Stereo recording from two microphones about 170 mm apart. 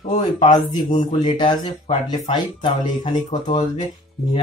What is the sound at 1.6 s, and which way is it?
Speech, 45° left (ahead or behind).